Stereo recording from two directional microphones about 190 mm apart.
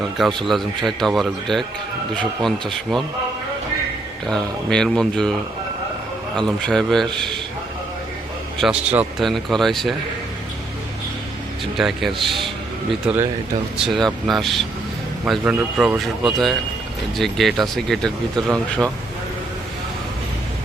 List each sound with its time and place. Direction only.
0.4 s speech: centre (ahead or behind)
4.3 s speech: 5° left (ahead or behind)
6.3 s speech: 5° left (ahead or behind)
8.5 s speech: 5° right (ahead or behind)
11.8 s speech: centre (ahead or behind)